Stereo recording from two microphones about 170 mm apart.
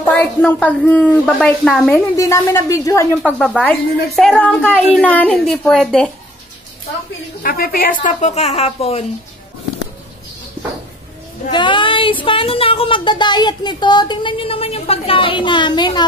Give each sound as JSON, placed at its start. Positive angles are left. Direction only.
{"t": 0.1, "sound": "a woman's voice", "side_deg": 10}
{"t": 2.1, "sound": "a woman's voice", "side_deg": 15}
{"t": 3.2, "sound": "a woman's voice", "side_deg": 5}
{"t": 7.4, "sound": "a woman's voice", "side_deg": 60}
{"t": 11.5, "sound": "child singing", "side_deg": 30}
{"t": 12.3, "sound": "speech", "side_deg": 30}